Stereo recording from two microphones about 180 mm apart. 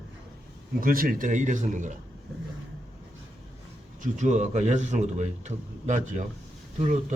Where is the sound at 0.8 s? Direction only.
50° right (ahead or behind).